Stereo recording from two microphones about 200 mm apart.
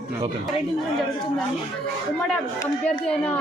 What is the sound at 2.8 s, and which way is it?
Speech, 5° left (ahead or behind).